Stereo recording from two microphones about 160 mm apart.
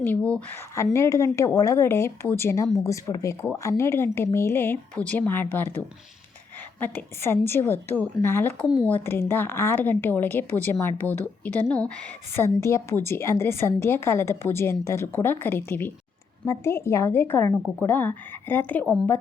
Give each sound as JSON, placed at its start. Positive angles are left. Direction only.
{"t": 0.0, "sound": "speech", "side_deg": 10}